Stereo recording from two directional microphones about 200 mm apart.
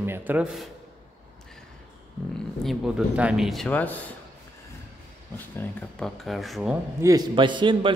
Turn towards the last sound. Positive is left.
turn(degrees=-25)  # may be behind; listen again after turning